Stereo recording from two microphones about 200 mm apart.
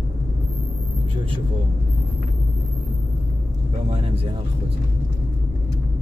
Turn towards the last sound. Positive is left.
turn(degrees=-30)  # may be behind; listen again after turning